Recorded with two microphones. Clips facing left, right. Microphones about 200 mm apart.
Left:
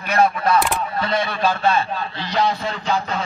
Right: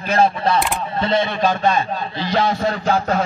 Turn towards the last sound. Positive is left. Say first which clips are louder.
# right 4 dB
turn(degrees=-50)  # may be behind; listen again after turning